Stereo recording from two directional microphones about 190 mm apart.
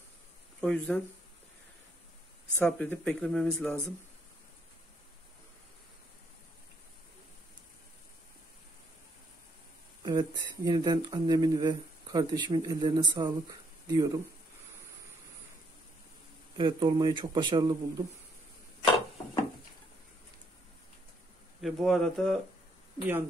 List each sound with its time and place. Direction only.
0.6 s speech: 5° left (ahead or behind)
2.5 s speech: 5° left (ahead or behind)
10.0 s speech: 20° right (ahead or behind)
16.5 s speech: 25° right (ahead or behind)
21.5 s speech: centre (ahead or behind)